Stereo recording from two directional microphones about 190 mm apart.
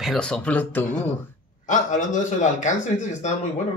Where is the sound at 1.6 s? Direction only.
40° left (ahead or behind).